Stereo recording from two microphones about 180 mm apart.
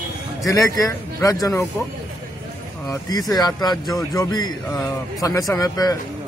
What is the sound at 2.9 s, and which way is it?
A man's voice, 20° left (ahead or behind).